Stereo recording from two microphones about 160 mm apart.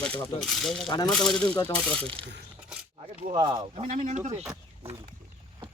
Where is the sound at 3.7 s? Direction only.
40° right (ahead or behind).